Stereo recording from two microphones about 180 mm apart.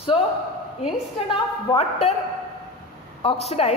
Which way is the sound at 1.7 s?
35° left (ahead or behind).